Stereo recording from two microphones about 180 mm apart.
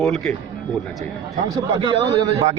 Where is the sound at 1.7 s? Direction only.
25° right (ahead or behind).